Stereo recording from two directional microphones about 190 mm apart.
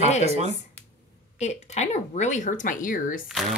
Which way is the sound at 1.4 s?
35° left (ahead or behind).